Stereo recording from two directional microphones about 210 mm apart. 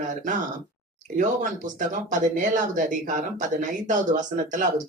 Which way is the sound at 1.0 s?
35° right (ahead or behind).